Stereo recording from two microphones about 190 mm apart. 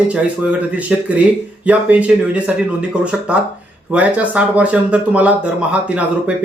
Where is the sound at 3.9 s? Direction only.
5° right (ahead or behind).